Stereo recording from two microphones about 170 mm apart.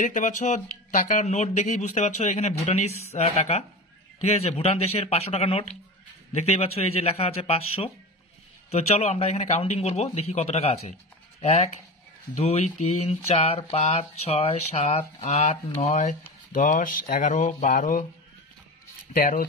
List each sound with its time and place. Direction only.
0.0 s speech: 50° left (ahead or behind)
19.1 s speech: 55° left (ahead or behind)